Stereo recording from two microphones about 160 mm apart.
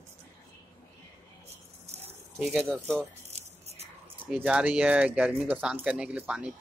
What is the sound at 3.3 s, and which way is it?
Music, 40° right (ahead or behind).